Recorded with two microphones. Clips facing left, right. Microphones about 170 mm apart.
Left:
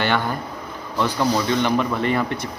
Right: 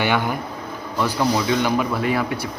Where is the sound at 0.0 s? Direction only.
10° right (ahead or behind).